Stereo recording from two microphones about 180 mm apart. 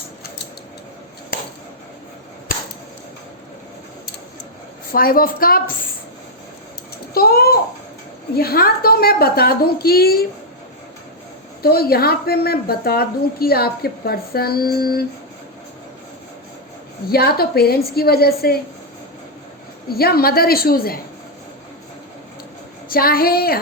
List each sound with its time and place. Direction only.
1.3 s chop: 55° left (ahead or behind)
4.9 s a woman's voice: 55° left (ahead or behind)
7.1 s a child's voice: 55° left (ahead or behind)
11.6 s a woman's voice: 60° left (ahead or behind)
17.1 s a woman's voice: 60° left (ahead or behind)
19.9 s a woman's voice: 60° left (ahead or behind)
22.9 s a woman's voice: 55° left (ahead or behind)